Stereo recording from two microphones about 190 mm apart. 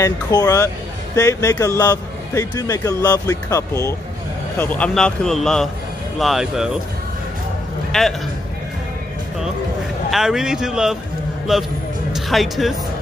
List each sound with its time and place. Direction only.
0.0 s a man's voice: 20° left (ahead or behind); by 6.8 s 5° right (ahead or behind)
7.9 s a man's voice: centre (ahead or behind)
10.1 s a man's voice: 5° right (ahead or behind)